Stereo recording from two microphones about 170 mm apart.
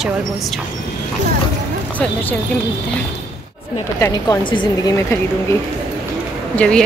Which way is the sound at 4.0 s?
20° left (ahead or behind).